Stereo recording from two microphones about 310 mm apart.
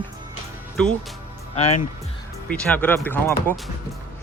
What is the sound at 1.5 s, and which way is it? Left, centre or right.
Speech, left.